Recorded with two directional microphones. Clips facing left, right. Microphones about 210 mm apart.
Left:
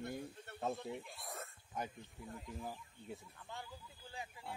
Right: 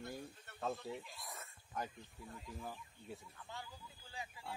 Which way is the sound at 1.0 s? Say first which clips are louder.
Left 4 dB; 55° left (ahead or behind).